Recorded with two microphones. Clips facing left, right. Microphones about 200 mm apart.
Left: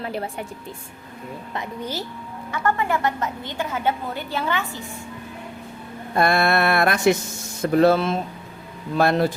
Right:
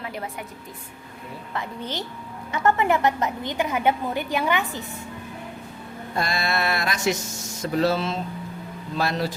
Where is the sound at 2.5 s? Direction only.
20° right (ahead or behind).